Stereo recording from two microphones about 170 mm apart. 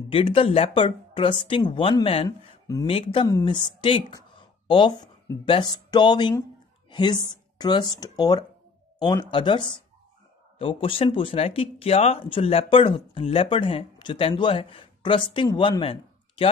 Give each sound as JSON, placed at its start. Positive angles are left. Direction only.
{"t": 0.1, "sound": "speech", "side_deg": 30}
{"t": 2.2, "sound": "speech", "side_deg": 20}
{"t": 2.9, "sound": "speech", "side_deg": 30}